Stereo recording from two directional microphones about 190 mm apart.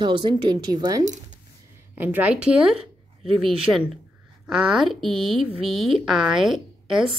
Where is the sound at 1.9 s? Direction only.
10° right (ahead or behind).